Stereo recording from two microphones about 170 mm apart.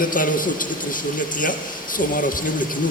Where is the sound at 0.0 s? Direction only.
55° left (ahead or behind).